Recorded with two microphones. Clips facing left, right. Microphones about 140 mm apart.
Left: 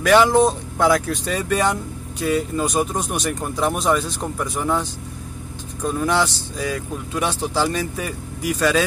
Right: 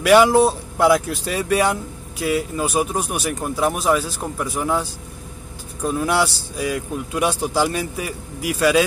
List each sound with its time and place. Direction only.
0.0 s speech: 10° right (ahead or behind)